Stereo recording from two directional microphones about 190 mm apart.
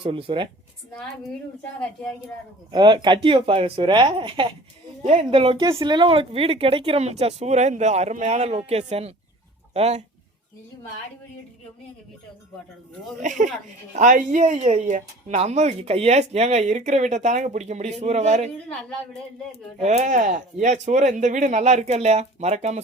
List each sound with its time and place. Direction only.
0.0 s speech: 30° right (ahead or behind)
1.8 s a woman's voice: 5° left (ahead or behind)
2.7 s speech: 25° right (ahead or behind)
13.1 s speech: 40° right (ahead or behind)
18.7 s a woman's voice: 5° left (ahead or behind)
19.8 s speech: 35° right (ahead or behind)